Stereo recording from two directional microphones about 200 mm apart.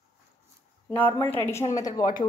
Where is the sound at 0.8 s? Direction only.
10° left (ahead or behind).